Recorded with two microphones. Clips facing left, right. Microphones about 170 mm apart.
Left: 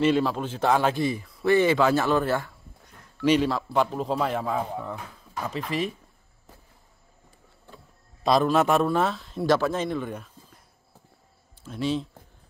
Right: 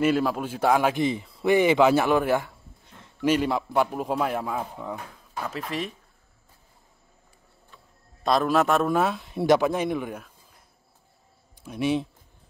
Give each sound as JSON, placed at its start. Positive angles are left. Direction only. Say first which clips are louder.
{"t": 0.0, "sound": "a man's voice", "louder": "even", "side_deg": -10}
{"t": 8.2, "sound": "a man's voice", "louder": "left 1 dB", "side_deg": 0}
{"t": 8.8, "sound": "a man's voice", "louder": "right 1 dB", "side_deg": -10}
{"t": 11.6, "sound": "speech", "louder": "right 2 dB", "side_deg": -15}